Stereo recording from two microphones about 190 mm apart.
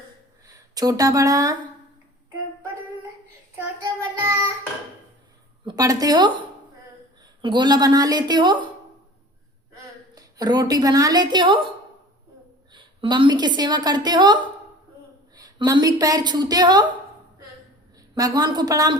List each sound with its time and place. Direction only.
0.7 s a sound: 20° right (ahead or behind)
5.6 s a woman's voice: 20° right (ahead or behind)
7.4 s a woman's voice: 25° right (ahead or behind)
10.2 s a woman's voice: 20° right (ahead or behind)
12.7 s a woman's voice: 25° right (ahead or behind)
15.4 s a woman's voice: 20° right (ahead or behind)
18.1 s a woman's voice: 20° right (ahead or behind)